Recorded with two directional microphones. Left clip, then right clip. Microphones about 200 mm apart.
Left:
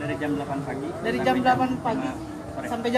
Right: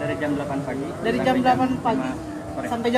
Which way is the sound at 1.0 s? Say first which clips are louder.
Right 2 dB; 10° right (ahead or behind).